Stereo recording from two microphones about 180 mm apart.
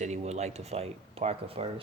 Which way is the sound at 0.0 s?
40° right (ahead or behind).